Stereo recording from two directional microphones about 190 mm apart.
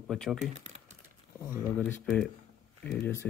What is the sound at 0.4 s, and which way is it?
Speech, 35° right (ahead or behind).